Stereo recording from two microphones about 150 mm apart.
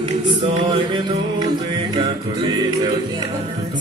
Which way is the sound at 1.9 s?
30° right (ahead or behind).